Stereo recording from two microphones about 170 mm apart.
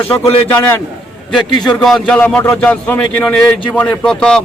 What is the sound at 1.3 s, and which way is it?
A man's voice, centre (ahead or behind).